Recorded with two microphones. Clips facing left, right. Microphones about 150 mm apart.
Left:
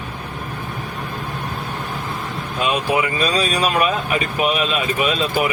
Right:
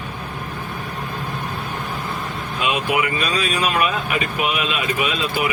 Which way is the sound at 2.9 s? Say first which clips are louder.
Left 2 dB; 35° left (ahead or behind).